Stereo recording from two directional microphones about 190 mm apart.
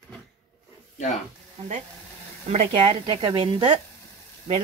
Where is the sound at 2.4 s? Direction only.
35° right (ahead or behind).